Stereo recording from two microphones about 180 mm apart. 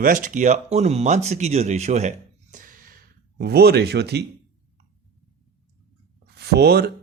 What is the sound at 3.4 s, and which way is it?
Speech, 60° right (ahead or behind).